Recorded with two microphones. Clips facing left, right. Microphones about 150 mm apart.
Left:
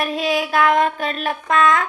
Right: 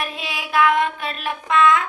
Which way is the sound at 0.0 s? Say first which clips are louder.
Left 9 dB; 40° left (ahead or behind).